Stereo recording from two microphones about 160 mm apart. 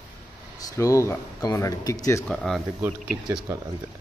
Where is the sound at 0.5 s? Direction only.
20° left (ahead or behind).